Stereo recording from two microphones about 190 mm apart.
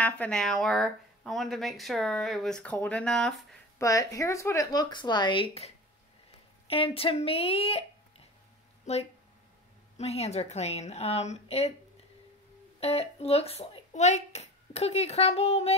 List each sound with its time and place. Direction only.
0.0 s speech: 5° left (ahead or behind)
3.7 s speech: 15° left (ahead or behind)
6.7 s a woman's voice: 30° left (ahead or behind)
8.9 s a woman's voice: 35° left (ahead or behind)
12.8 s a child's voice: 35° left (ahead or behind)